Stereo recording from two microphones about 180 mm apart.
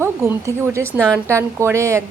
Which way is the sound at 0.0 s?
15° right (ahead or behind).